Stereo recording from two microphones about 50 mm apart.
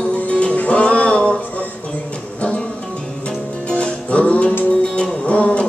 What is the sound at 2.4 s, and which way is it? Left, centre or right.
Music, left.